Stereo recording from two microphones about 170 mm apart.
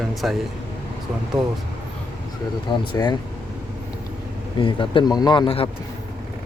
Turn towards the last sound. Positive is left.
turn(degrees=30)  # may be behind; listen again after turning